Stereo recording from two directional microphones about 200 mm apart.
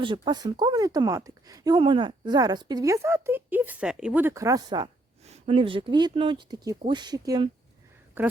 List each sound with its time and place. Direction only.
0.0 s speech: 20° right (ahead or behind)